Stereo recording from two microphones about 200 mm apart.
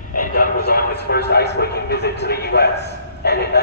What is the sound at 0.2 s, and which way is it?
Speech, 45° left (ahead or behind).